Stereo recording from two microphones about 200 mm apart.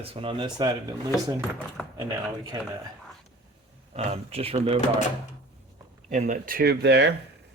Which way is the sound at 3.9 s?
30° right (ahead or behind).